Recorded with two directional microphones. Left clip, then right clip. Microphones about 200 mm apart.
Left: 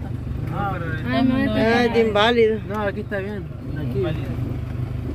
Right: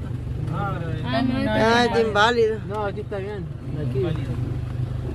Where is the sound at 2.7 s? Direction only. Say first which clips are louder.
Left 2 dB; 55° left (ahead or behind).